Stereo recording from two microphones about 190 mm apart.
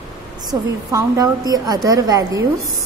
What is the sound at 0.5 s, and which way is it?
Speech, 20° right (ahead or behind).